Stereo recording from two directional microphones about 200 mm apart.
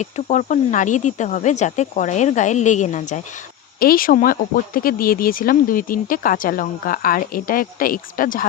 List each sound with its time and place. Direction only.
0.0 s speech: 35° left (ahead or behind)